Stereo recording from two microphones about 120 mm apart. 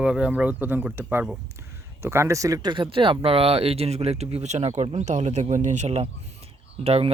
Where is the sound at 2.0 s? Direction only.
20° right (ahead or behind).